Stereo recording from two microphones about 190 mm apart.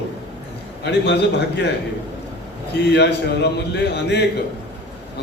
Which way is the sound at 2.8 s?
65° left (ahead or behind).